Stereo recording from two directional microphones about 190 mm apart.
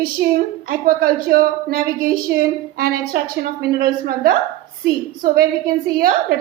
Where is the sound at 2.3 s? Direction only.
65° right (ahead or behind).